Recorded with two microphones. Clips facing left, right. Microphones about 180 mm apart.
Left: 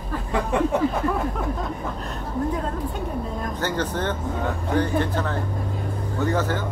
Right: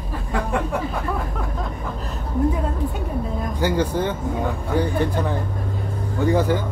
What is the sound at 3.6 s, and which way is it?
Speech, 10° right (ahead or behind).